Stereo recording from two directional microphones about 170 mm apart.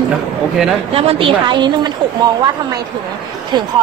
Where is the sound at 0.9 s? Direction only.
35° right (ahead or behind).